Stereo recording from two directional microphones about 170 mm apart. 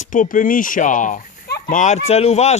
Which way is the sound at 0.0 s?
50° left (ahead or behind).